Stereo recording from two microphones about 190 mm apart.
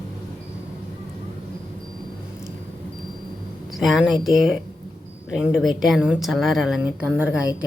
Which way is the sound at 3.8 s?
Centre (ahead or behind).